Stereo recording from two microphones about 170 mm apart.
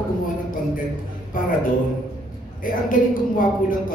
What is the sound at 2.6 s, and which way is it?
A man's voice, 55° left (ahead or behind).